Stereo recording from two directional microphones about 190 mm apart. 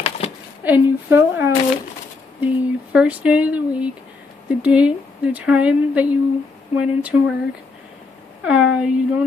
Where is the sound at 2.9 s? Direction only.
5° right (ahead or behind).